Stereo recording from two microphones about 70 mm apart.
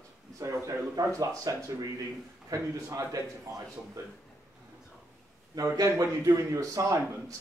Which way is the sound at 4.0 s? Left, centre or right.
Right.